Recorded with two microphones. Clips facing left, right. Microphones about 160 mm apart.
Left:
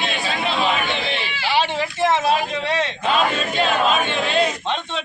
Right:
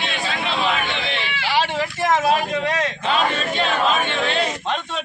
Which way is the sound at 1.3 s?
25° left (ahead or behind).